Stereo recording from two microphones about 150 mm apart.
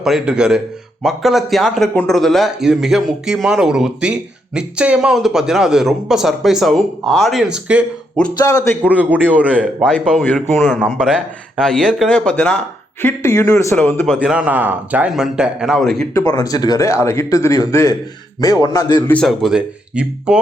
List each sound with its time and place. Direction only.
0.0 s a man's voice: 5° right (ahead or behind)
8.4 s a man's voice: 20° left (ahead or behind)
8.8 s a man's voice: 10° right (ahead or behind)
9.6 s a man's voice: 5° left (ahead or behind)
10.8 s a man's voice: 5° right (ahead or behind); by 14.1 s 15° left (ahead or behind)
14.1 s a man's voice: 5° right (ahead or behind)
16.1 s speech: 25° left (ahead or behind)
19.0 s a man's voice: 5° left (ahead or behind)